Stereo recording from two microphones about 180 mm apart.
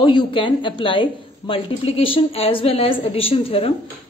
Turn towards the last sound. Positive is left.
turn(degrees=30)  # may be behind; listen again after turning